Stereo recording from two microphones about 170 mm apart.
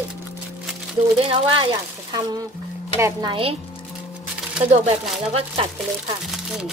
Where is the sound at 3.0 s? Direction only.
25° right (ahead or behind).